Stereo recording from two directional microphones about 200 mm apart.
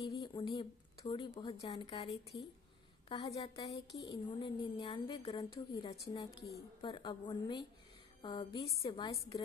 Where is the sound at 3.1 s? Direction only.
25° left (ahead or behind).